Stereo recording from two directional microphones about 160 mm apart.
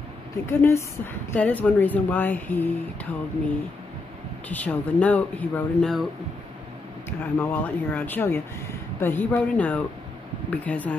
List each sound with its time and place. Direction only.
0.5 s speech: 15° left (ahead or behind)
4.5 s speech: 10° left (ahead or behind)
7.1 s speech: 10° left (ahead or behind)